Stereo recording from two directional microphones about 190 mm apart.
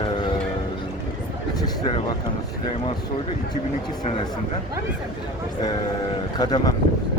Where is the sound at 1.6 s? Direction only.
25° left (ahead or behind).